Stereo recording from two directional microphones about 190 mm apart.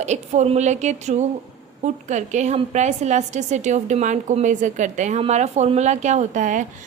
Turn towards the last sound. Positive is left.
turn(degrees=-40)  # may be behind; listen again after turning